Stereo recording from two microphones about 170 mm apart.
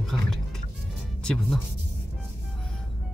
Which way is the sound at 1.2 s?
5° left (ahead or behind).